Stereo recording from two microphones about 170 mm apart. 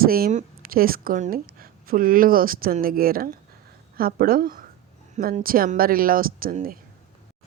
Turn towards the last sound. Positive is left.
turn(degrees=-55)  # may be behind; listen again after turning